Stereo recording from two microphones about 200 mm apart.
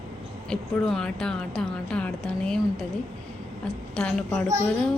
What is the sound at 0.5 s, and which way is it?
Speech, 5° left (ahead or behind).